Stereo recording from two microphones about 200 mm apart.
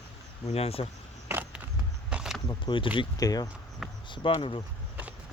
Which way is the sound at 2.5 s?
25° left (ahead or behind).